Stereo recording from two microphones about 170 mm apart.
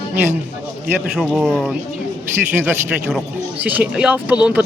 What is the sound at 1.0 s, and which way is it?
A man's voice, centre (ahead or behind).